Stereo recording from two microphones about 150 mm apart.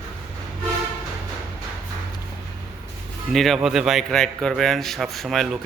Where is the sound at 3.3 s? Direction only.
Centre (ahead or behind).